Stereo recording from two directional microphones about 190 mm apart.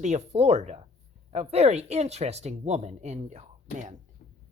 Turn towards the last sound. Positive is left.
turn(degrees=-35)  # may be behind; listen again after turning